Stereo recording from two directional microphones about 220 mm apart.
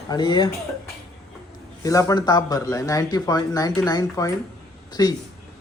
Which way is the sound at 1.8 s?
15° left (ahead or behind).